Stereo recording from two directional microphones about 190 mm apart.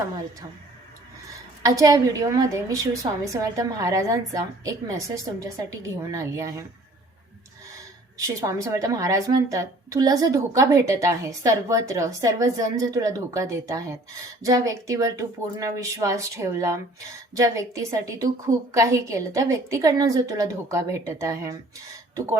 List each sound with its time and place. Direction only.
1.6 s a woman's voice: 20° right (ahead or behind)
8.4 s a woman's voice: 15° right (ahead or behind)